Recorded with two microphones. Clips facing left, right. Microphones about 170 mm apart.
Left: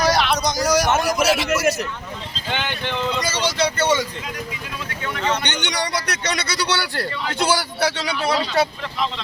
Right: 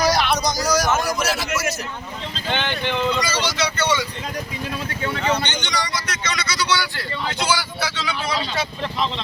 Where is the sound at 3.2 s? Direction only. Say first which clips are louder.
Left 2 dB; 50° left (ahead or behind).